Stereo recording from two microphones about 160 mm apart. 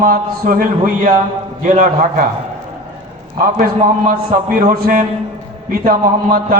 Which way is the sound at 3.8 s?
60° right (ahead or behind).